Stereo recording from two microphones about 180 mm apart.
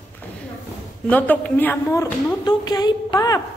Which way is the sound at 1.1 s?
10° left (ahead or behind).